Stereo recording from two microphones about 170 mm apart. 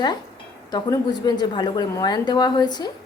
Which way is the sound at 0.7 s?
25° left (ahead or behind).